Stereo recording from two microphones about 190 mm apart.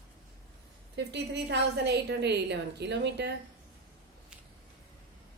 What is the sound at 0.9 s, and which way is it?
A woman's voice, 65° right (ahead or behind).